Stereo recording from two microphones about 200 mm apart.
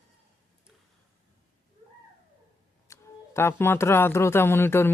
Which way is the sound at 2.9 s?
15° left (ahead or behind).